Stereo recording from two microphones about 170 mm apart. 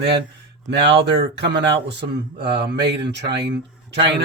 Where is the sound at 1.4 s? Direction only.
80° right.